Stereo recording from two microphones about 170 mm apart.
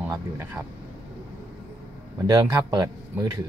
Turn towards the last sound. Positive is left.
turn(degrees=-20)  # may be behind; listen again after turning